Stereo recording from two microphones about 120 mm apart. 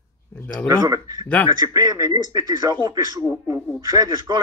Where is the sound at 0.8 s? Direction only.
35° right (ahead or behind).